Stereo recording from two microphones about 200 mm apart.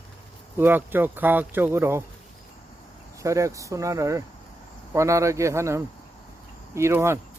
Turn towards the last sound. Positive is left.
turn(degrees=-15)  # may be behind; listen again after turning